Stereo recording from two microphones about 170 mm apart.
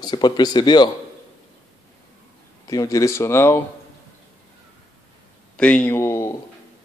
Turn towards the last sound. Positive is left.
turn(degrees=15)  # may be behind; listen again after turning